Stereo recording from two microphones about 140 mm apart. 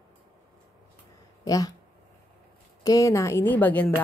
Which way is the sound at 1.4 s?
25° left (ahead or behind).